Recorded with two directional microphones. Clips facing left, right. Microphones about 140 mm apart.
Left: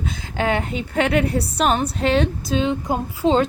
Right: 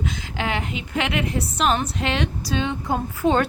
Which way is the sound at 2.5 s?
25° left (ahead or behind).